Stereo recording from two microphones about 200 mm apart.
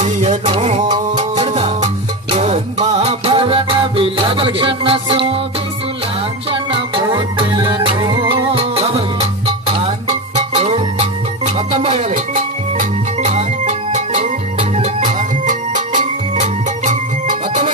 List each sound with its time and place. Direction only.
0.0 s music: 35° right (ahead or behind)
6.5 s music: 25° right (ahead or behind)